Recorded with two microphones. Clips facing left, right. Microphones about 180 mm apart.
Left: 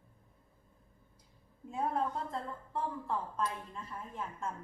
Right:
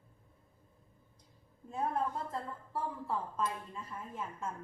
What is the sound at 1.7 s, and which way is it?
A woman's voice, centre (ahead or behind).